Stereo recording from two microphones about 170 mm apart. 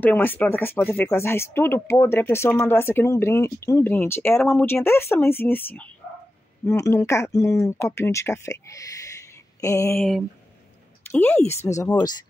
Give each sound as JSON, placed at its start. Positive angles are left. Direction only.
{"t": 0.0, "sound": "speech", "side_deg": 10}
{"t": 11.1, "sound": "speech", "side_deg": 10}